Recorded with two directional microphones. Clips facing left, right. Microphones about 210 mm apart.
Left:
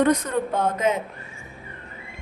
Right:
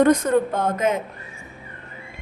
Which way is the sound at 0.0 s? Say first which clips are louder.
Right 4 dB; 45° right (ahead or behind).